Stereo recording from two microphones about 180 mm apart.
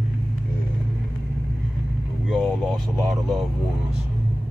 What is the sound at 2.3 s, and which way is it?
Speech, centre (ahead or behind).